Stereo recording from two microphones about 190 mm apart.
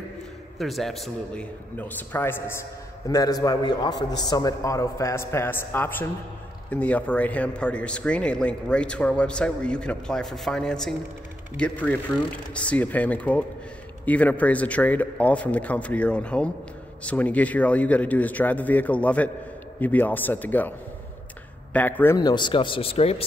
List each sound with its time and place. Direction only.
0.6 s a man's voice: centre (ahead or behind)
21.7 s a man's voice: 10° left (ahead or behind); by 23.2 s 30° left (ahead or behind)